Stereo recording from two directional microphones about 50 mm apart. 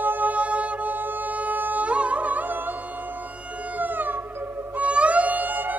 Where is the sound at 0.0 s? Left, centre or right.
Right.